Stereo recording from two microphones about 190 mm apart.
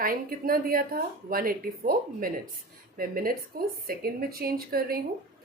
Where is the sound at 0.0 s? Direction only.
50° right (ahead or behind).